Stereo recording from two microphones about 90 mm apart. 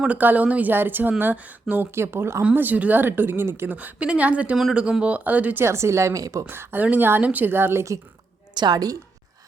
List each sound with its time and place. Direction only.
0.0 s speech: 20° right (ahead or behind)
2.4 s speech: 15° right (ahead or behind)
3.8 s speech: 15° right (ahead or behind)
5.6 s a woman's voice: 30° right (ahead or behind)
6.5 s speech: 25° right (ahead or behind)
8.5 s a woman's voice: 50° right (ahead or behind)